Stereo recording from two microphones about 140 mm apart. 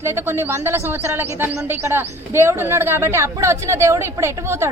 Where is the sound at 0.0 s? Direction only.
20° right (ahead or behind).